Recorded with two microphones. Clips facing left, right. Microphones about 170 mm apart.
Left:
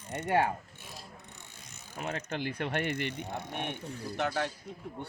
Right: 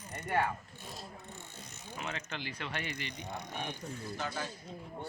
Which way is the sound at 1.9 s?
45° left (ahead or behind).